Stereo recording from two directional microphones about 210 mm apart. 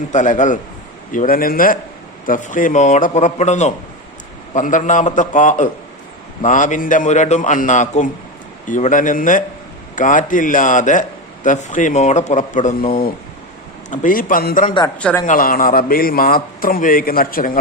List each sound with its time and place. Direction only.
0.1 s speech: 35° left (ahead or behind)
14.9 s speech: 5° left (ahead or behind)
15.3 s a man's voice: 40° left (ahead or behind)